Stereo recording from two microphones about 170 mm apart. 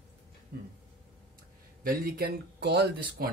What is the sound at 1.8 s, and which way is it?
Speech, 60° right (ahead or behind).